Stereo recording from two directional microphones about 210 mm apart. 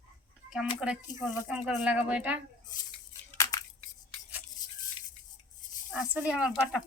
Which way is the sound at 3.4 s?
15° left (ahead or behind).